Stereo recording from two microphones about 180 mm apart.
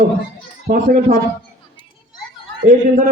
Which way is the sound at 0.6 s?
40° right (ahead or behind).